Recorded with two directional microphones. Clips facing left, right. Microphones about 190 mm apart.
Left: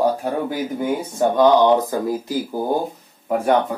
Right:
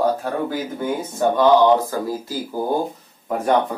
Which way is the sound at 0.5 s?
15° left (ahead or behind).